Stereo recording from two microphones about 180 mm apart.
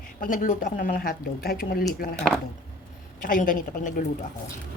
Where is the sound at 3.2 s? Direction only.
50° left (ahead or behind).